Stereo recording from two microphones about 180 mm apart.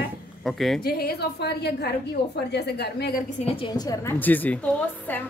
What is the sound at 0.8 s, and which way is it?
A woman's voice, 60° left (ahead or behind).